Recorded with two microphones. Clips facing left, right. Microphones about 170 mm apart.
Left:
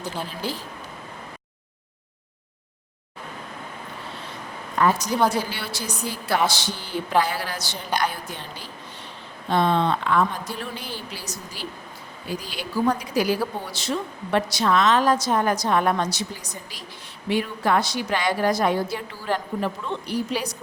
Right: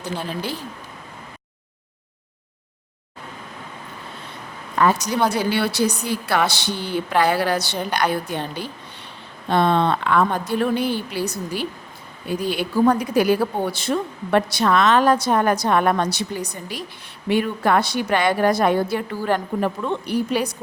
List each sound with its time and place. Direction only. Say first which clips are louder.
4.8 s a woman's voice: right 2 dB; 75° right (ahead or behind); by 20.6 s 55° right (ahead or behind)